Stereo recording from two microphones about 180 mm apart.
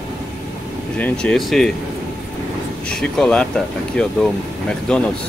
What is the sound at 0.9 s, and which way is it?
Speech, 5° left (ahead or behind).